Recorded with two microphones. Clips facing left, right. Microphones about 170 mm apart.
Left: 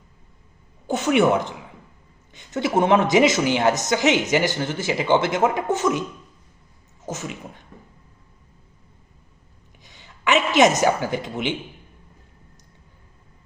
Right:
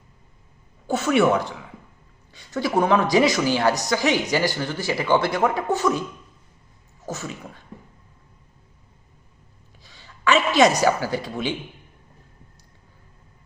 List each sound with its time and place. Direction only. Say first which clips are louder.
0.9 s speech: left 1 dB; 20° left (ahead or behind)
9.8 s a woman's voice: right 1 dB; 20° left (ahead or behind)